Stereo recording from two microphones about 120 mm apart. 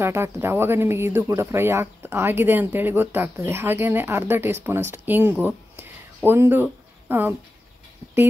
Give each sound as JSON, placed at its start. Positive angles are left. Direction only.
{"t": 0.0, "sound": "speech", "side_deg": -20}